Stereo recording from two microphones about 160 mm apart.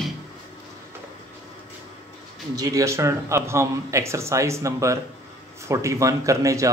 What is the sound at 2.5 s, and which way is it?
Speech, 20° right (ahead or behind).